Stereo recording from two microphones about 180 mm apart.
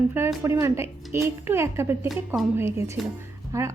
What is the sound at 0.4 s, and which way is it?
A woman's voice, 15° right (ahead or behind).